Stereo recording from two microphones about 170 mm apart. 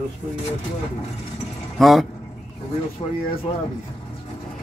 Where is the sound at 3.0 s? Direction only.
35° left (ahead or behind).